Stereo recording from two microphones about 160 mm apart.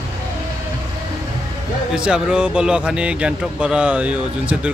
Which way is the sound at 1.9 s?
5° right (ahead or behind).